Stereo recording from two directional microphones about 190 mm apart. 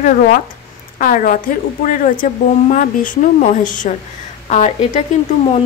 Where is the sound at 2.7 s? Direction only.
40° left (ahead or behind).